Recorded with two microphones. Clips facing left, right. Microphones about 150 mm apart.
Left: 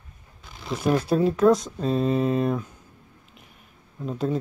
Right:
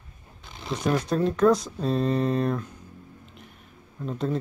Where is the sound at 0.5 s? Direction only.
5° left (ahead or behind).